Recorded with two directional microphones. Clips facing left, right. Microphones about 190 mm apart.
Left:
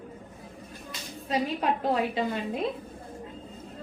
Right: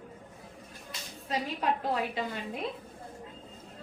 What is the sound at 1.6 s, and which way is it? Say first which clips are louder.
A woman's voice: left 1 dB; 25° left (ahead or behind).